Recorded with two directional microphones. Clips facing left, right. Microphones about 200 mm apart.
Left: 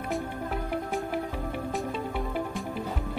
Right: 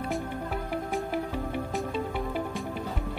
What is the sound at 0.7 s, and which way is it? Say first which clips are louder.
Music: right 1 dB; centre (ahead or behind).